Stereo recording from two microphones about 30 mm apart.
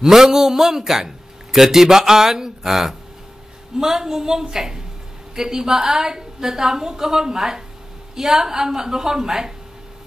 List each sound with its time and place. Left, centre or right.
0.0 s a man's voice: centre